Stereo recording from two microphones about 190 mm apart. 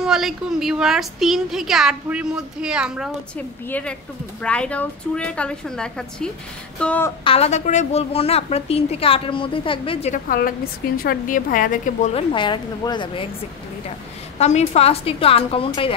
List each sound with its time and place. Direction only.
0.0 s a woman's voice: centre (ahead or behind)
3.3 s a woman's voice: 10° left (ahead or behind)
7.2 s a woman's voice: 35° left (ahead or behind)
10.2 s a woman's voice: 50° left (ahead or behind); by 13.3 s 25° left (ahead or behind)
14.4 s a woman's voice: 35° left (ahead or behind)